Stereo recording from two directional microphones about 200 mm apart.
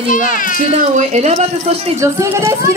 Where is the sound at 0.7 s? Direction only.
35° right (ahead or behind).